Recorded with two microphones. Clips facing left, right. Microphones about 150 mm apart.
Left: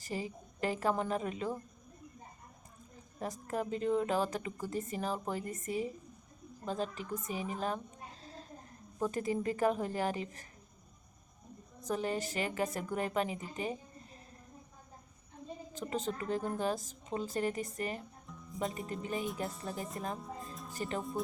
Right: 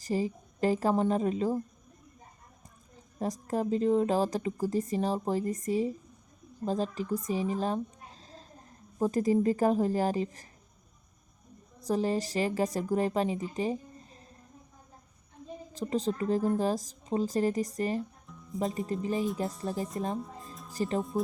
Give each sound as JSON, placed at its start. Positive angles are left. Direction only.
{"t": 0.1, "sound": "a woman's voice", "side_deg": -35}
{"t": 3.2, "sound": "a woman's voice", "side_deg": -35}
{"t": 9.0, "sound": "a woman's voice", "side_deg": -40}
{"t": 11.8, "sound": "a woman's voice", "side_deg": -35}
{"t": 15.7, "sound": "a woman's voice", "side_deg": -35}
{"t": 18.3, "sound": "music", "side_deg": 0}
{"t": 18.9, "sound": "a woman's voice", "side_deg": -35}
{"t": 20.1, "sound": "music", "side_deg": 0}
{"t": 20.7, "sound": "a woman's voice", "side_deg": -35}